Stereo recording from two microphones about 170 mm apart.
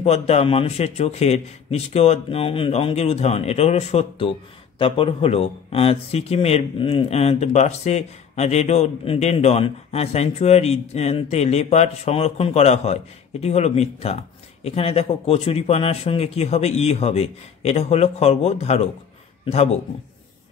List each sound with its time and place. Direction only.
0.0 s speech: 40° left (ahead or behind)